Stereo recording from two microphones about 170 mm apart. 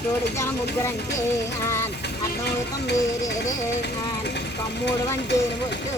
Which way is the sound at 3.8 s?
90° left.